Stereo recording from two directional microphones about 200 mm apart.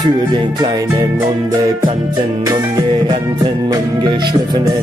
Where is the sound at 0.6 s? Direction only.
20° right (ahead or behind).